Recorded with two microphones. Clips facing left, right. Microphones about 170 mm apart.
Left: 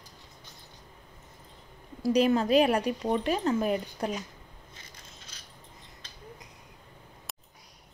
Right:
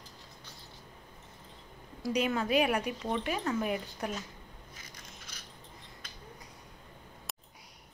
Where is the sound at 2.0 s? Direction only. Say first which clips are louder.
Left 7 dB; 30° left (ahead or behind).